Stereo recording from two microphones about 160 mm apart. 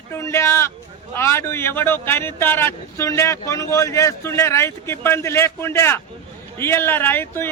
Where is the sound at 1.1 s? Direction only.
15° left (ahead or behind).